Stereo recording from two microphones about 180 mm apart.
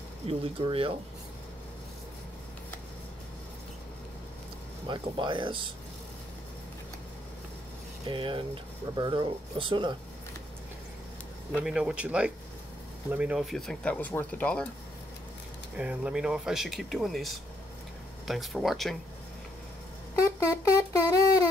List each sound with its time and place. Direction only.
0.3 s speech: 30° right (ahead or behind)
4.8 s speech: 25° right (ahead or behind)
8.1 s speech: 30° right (ahead or behind)
11.5 s speech: 5° right (ahead or behind)
15.7 s speech: 5° right (ahead or behind)
20.3 s a sound: 15° left (ahead or behind)